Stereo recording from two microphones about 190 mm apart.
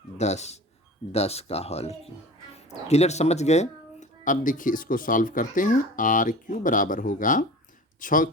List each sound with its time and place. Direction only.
0.2 s speech: 35° left (ahead or behind)